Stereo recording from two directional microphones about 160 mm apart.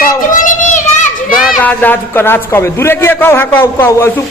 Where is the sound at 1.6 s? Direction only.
10° left (ahead or behind).